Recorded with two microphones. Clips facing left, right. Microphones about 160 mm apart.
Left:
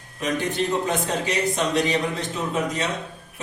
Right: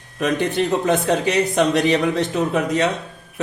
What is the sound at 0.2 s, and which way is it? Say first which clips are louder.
A man's voice: right 5 dB; 65° right (ahead or behind).